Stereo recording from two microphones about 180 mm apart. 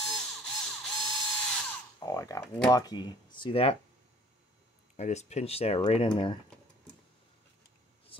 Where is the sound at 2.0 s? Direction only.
20° left (ahead or behind).